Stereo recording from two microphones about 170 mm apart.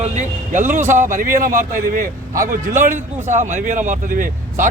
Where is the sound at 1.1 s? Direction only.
55° right (ahead or behind).